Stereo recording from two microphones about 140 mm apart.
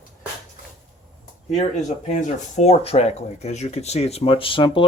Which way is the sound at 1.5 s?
60° left (ahead or behind).